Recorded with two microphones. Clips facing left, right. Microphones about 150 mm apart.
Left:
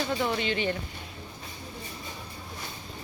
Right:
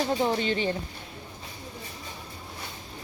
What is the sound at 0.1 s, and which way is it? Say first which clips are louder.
Speech: right 3 dB; 35° right (ahead or behind).